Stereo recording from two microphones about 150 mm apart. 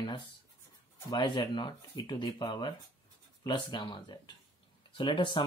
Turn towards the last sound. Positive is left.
turn(degrees=35)  # may be behind; listen again after turning